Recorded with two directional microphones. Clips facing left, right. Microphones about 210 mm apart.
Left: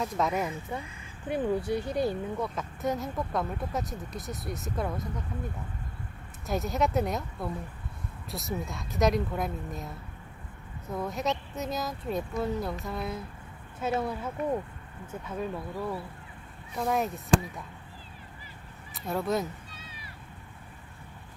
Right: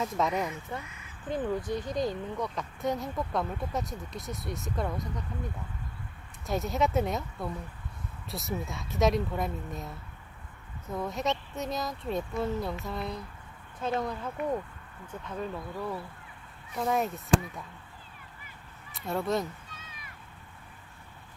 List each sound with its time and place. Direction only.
0.0 s speech: centre (ahead or behind)
0.8 s a sound: 30° left (ahead or behind)
1.3 s speech: 10° left (ahead or behind)
6.4 s speech: centre (ahead or behind)
18.9 s speech: centre (ahead or behind)
19.7 s a sound: 30° left (ahead or behind)